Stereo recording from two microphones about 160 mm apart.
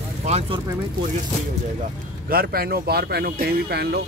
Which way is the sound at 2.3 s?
70° right (ahead or behind).